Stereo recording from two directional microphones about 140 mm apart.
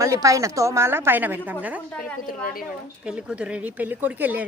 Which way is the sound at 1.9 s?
10° left (ahead or behind).